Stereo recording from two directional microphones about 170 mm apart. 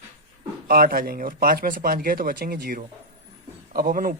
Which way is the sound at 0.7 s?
60° right (ahead or behind).